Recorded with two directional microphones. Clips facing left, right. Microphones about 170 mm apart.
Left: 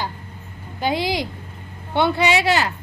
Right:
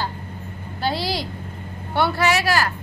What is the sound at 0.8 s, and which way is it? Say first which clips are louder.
Speech: left 3 dB; 20° left (ahead or behind).